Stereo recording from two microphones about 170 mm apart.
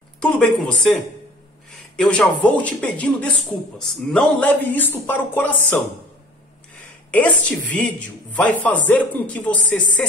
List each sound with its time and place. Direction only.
0.2 s speech: 5° left (ahead or behind)
2.0 s speech: 5° left (ahead or behind)
7.1 s speech: 10° left (ahead or behind)